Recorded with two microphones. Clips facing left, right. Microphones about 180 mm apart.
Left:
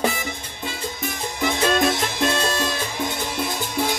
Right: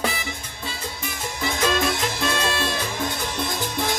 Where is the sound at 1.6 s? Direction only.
45° left (ahead or behind).